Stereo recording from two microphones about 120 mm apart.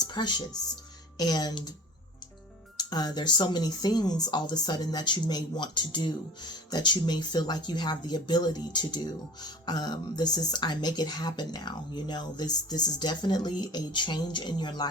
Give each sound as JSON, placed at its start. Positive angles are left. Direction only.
{"t": 0.1, "sound": "speech", "side_deg": 40}
{"t": 2.7, "sound": "speech", "side_deg": 35}